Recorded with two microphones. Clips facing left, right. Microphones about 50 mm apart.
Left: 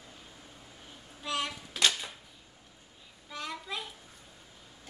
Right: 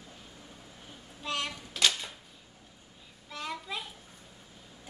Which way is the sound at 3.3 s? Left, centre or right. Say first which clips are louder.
Right 1 dB; centre.